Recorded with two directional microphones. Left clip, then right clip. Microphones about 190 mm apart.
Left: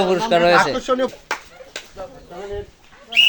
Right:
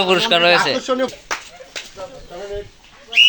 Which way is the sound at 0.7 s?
30° left (ahead or behind).